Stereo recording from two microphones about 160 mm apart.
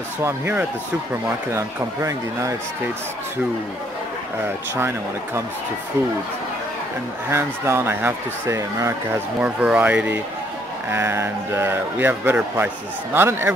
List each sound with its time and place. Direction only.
0.2 s a man's voice: 15° right (ahead or behind)
4.7 s a man's voice: 15° right (ahead or behind)
7.2 s a man's voice: 15° right (ahead or behind)
9.4 s a man's voice: 5° right (ahead or behind)